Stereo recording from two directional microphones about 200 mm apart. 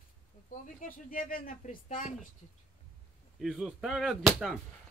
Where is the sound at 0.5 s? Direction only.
45° left (ahead or behind).